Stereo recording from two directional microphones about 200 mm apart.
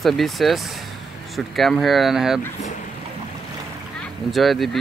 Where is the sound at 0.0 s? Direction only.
Centre (ahead or behind).